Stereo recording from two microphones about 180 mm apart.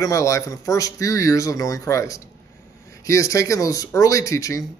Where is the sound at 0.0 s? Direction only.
15° left (ahead or behind).